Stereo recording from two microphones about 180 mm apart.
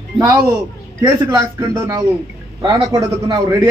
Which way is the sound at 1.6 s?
20° right (ahead or behind).